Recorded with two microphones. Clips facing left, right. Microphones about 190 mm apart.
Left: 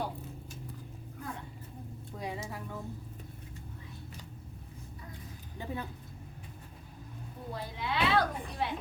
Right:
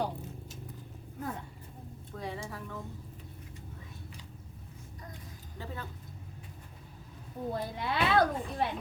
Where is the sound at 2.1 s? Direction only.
15° left (ahead or behind).